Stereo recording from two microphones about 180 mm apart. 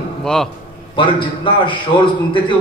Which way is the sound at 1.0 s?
25° left (ahead or behind).